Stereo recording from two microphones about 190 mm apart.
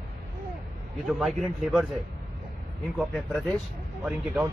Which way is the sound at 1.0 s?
Centre (ahead or behind).